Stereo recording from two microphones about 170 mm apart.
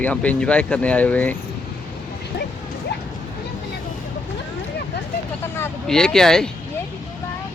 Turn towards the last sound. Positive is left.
turn(degrees=5)  # may be behind; listen again after turning